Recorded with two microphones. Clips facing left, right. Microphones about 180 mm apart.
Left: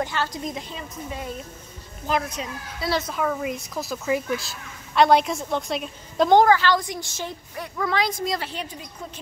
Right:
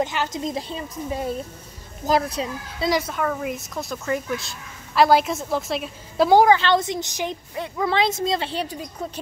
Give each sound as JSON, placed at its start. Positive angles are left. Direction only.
{"t": 0.0, "sound": "a woman's voice", "side_deg": -20}
{"t": 0.6, "sound": "a child's voice", "side_deg": -35}
{"t": 2.9, "sound": "speech", "side_deg": -10}
{"t": 3.2, "sound": "speech", "side_deg": 0}
{"t": 6.5, "sound": "a woman's voice", "side_deg": -25}